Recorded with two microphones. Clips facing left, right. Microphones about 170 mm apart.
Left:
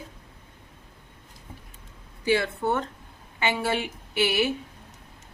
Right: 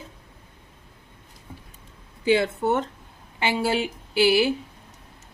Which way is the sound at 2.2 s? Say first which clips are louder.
Right 3 dB; 20° right (ahead or behind).